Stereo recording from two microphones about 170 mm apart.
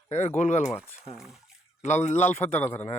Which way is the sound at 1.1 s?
Centre (ahead or behind).